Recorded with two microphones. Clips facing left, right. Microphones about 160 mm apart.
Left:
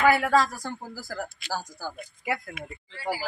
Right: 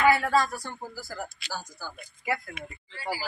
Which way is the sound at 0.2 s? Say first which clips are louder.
Left 2 dB; 90° left.